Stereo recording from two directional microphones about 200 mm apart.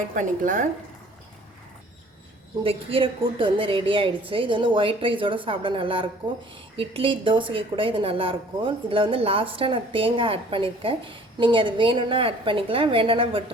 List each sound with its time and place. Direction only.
0.1 s a woman's voice: 40° right (ahead or behind)
2.6 s a woman's voice: 25° right (ahead or behind)